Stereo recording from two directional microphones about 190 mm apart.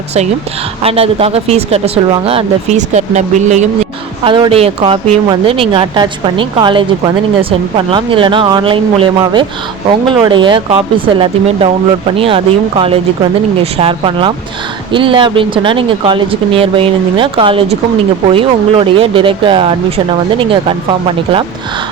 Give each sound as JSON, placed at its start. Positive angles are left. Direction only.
{"t": 0.8, "sound": "speech", "side_deg": -30}
{"t": 4.2, "sound": "a woman's voice", "side_deg": -25}
{"t": 13.6, "sound": "a woman's voice", "side_deg": -30}